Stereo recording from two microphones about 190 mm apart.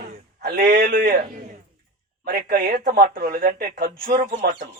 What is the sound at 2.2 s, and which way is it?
Speech, 50° right (ahead or behind).